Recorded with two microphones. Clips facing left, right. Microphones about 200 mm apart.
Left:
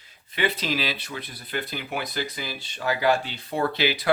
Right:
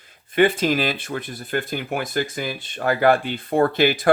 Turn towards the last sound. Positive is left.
turn(degrees=-50)  # may be behind; listen again after turning